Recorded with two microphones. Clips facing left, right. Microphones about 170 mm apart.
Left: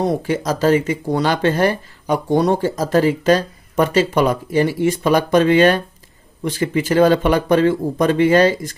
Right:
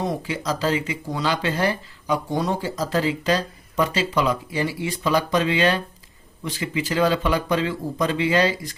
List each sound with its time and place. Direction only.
0.0 s speech: 55° left (ahead or behind)